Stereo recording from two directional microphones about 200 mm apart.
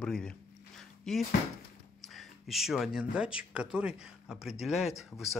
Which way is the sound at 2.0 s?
Centre (ahead or behind).